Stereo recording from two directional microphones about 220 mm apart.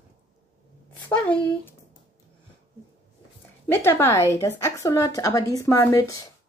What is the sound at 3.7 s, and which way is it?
A woman's voice, 10° left (ahead or behind).